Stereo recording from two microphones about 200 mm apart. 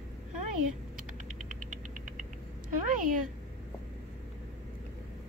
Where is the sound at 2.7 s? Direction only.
40° right (ahead or behind).